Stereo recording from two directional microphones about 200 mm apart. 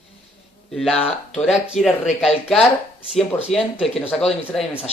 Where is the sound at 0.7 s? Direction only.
Centre (ahead or behind).